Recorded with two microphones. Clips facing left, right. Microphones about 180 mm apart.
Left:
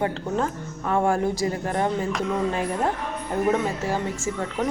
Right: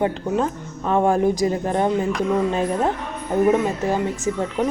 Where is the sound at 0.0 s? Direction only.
20° right (ahead or behind).